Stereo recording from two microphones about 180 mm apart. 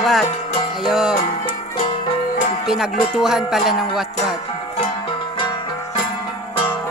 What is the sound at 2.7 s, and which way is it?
Music, 5° right (ahead or behind).